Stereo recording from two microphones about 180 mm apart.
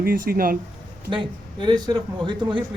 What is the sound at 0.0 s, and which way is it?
Speech, 55° right (ahead or behind).